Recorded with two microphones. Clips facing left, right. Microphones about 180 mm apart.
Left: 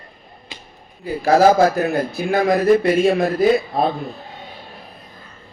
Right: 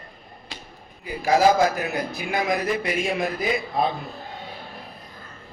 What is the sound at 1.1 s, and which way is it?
Speech, 50° left (ahead or behind).